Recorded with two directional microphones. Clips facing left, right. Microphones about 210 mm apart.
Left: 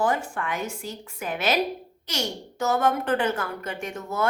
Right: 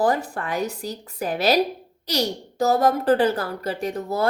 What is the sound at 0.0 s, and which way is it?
Speech, 35° right (ahead or behind).